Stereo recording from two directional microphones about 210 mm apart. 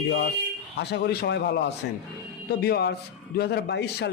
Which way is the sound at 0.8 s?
50° left (ahead or behind).